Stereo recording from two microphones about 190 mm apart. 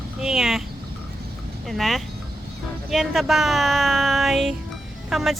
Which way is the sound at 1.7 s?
Centre (ahead or behind).